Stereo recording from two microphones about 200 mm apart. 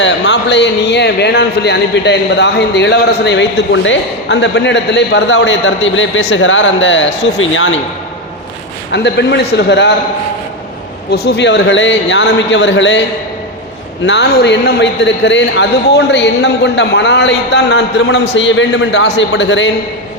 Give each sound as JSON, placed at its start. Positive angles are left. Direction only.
{"t": 0.0, "sound": "speech", "side_deg": 60}
{"t": 7.2, "sound": "speech", "side_deg": 75}
{"t": 8.9, "sound": "speech", "side_deg": 60}
{"t": 11.1, "sound": "speech", "side_deg": 55}